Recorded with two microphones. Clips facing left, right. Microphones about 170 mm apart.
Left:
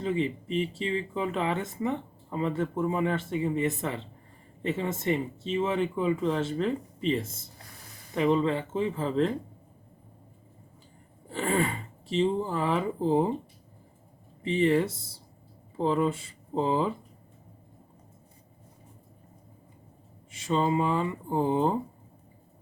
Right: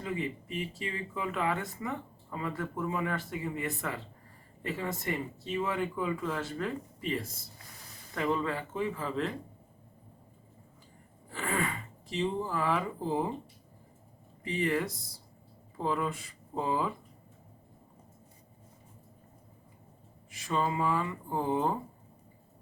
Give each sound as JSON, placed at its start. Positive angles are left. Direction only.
{"t": 0.0, "sound": "speech", "side_deg": 25}
{"t": 11.3, "sound": "speech", "side_deg": 30}
{"t": 14.4, "sound": "speech", "side_deg": 25}
{"t": 20.3, "sound": "speech", "side_deg": 25}